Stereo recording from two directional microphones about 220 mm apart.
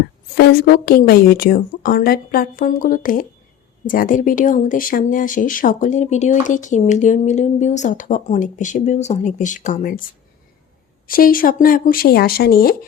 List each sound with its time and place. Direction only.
0.3 s a woman's voice: 45° left (ahead or behind)
11.0 s speech: 40° left (ahead or behind)